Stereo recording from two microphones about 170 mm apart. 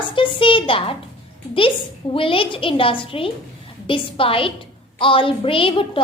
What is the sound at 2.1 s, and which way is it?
A woman's voice, 30° left (ahead or behind).